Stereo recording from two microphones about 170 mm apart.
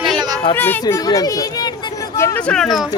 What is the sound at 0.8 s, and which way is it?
Speech, 20° left (ahead or behind).